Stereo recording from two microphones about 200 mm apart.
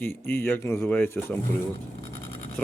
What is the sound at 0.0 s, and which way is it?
Speech, 10° left (ahead or behind).